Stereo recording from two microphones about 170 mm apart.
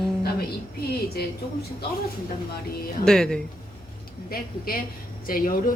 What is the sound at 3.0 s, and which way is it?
Speech, 5° left (ahead or behind).